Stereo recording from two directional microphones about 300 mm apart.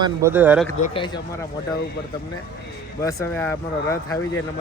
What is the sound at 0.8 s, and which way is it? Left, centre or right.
Speech, centre.